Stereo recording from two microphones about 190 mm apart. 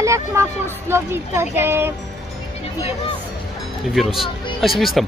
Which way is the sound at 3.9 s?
Centre (ahead or behind).